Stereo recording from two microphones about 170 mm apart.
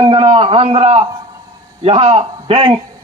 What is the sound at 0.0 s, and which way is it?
A man's voice, 30° right (ahead or behind).